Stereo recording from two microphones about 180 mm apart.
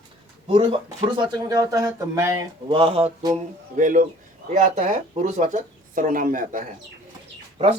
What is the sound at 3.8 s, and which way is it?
Speech, 45° right (ahead or behind).